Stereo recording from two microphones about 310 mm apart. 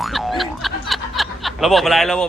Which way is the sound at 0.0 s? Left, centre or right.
Centre.